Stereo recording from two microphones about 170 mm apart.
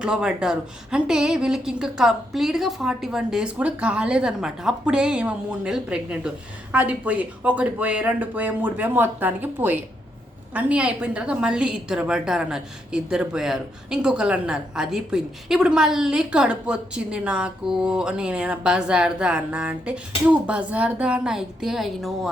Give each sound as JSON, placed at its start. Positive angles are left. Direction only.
{"t": 0.0, "sound": "a woman's voice", "side_deg": -5}